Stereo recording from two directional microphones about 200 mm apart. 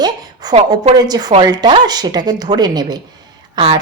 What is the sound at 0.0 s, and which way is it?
A woman's voice, 20° right (ahead or behind).